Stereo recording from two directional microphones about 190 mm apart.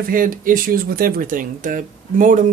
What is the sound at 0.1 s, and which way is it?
Speech, 45° right (ahead or behind).